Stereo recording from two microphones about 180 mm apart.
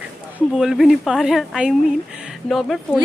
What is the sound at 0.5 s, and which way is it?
Speech, centre (ahead or behind).